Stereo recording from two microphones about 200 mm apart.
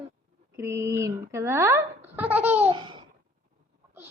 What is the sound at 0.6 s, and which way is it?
Speech, 15° right (ahead or behind).